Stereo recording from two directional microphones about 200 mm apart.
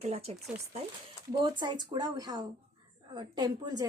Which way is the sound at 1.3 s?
20° right (ahead or behind).